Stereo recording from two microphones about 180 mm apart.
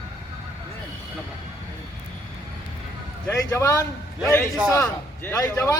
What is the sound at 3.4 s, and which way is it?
A man's voice, 15° left (ahead or behind).